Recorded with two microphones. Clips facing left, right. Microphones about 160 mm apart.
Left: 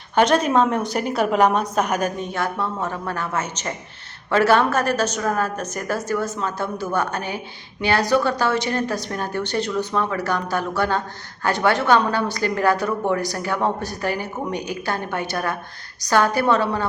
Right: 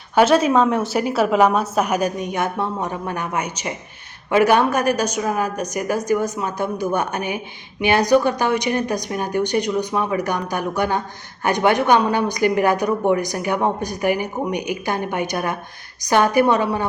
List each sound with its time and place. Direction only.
0.2 s a woman's voice: 5° right (ahead or behind)